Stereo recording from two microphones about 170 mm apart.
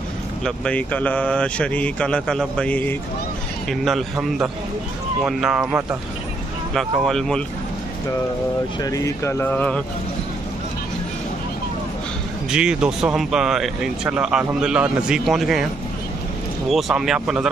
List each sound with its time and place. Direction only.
0.5 s speech: 5° left (ahead or behind)
8.8 s speech: 20° left (ahead or behind)
12.4 s speech: 5° right (ahead or behind)